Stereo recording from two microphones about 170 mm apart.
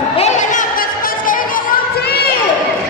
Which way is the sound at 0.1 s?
40° left (ahead or behind).